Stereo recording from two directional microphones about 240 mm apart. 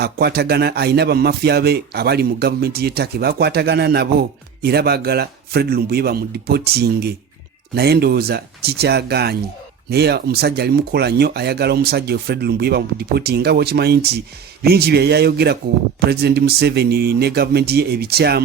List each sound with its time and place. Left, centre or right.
0.0 s a man's voice: right